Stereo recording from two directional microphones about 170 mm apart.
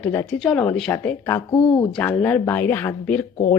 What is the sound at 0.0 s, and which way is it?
A woman's voice, 15° left (ahead or behind).